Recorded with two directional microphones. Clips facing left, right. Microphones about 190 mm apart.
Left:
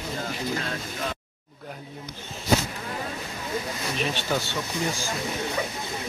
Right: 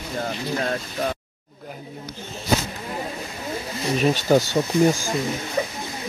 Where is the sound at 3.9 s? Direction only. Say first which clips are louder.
Right 10 dB; 40° right (ahead or behind).